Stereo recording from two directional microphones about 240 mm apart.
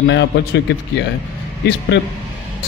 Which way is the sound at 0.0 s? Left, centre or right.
Left.